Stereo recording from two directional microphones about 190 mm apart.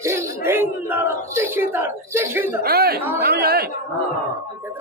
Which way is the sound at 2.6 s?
55° right (ahead or behind).